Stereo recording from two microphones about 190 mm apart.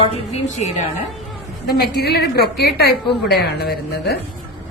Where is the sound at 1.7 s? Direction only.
55° left (ahead or behind).